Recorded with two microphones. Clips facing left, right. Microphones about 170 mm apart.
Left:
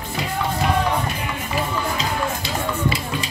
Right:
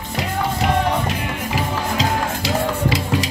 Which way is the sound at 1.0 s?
90° right.